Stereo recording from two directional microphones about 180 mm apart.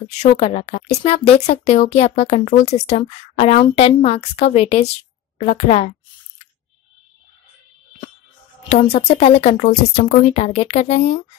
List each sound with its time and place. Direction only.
0.0 s speech: 40° left (ahead or behind)
5.4 s a sound: 35° left (ahead or behind)
8.6 s speech: 35° left (ahead or behind)